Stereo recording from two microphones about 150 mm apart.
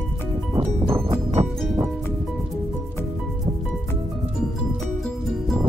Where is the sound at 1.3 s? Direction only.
45° right (ahead or behind).